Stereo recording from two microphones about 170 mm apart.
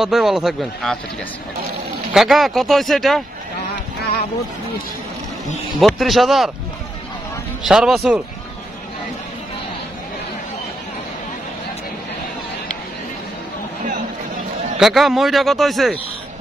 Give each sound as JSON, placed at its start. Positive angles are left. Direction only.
{"t": 0.0, "sound": "speech", "side_deg": 0}
{"t": 2.1, "sound": "speech", "side_deg": 0}
{"t": 5.8, "sound": "speech", "side_deg": 0}
{"t": 7.6, "sound": "speech", "side_deg": -5}
{"t": 14.8, "sound": "speech", "side_deg": 0}